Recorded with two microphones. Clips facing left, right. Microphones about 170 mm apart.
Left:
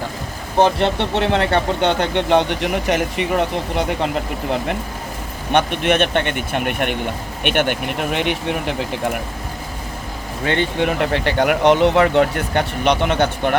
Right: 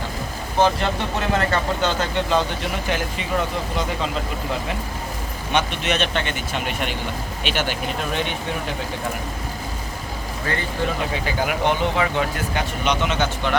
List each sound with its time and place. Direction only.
0.6 s speech: 70° left (ahead or behind)
10.6 s speech: 70° left (ahead or behind); by 13.6 s 55° left (ahead or behind)